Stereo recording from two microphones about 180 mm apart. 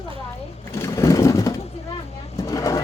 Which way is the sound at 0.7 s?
15° left (ahead or behind).